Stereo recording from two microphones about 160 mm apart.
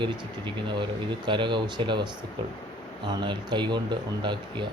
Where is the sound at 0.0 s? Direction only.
30° right (ahead or behind).